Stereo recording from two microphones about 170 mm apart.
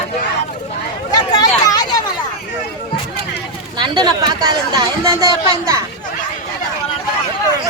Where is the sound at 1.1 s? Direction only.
25° left (ahead or behind).